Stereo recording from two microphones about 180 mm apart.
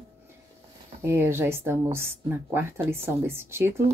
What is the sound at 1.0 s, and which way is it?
A woman's voice, 15° right (ahead or behind).